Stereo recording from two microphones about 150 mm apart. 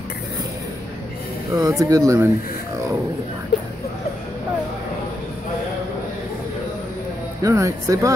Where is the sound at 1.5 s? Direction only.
20° right (ahead or behind).